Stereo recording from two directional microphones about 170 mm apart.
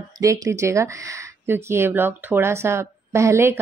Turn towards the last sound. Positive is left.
turn(degrees=-15)  # may be behind; listen again after turning